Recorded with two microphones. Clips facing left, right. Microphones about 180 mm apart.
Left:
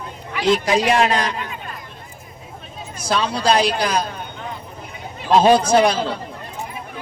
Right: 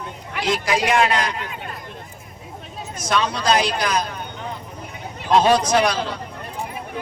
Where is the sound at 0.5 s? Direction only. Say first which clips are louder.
Left 2 dB; 30° left (ahead or behind).